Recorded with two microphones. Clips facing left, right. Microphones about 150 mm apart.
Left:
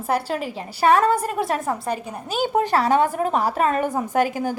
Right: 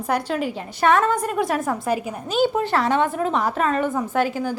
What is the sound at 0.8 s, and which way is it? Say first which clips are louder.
Speech: left 1 dB; 35° left (ahead or behind).